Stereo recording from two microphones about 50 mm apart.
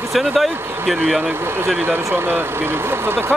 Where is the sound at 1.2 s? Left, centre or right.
Right.